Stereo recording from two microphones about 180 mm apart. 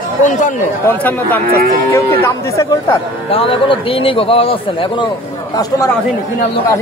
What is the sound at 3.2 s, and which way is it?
Speech, 30° left (ahead or behind).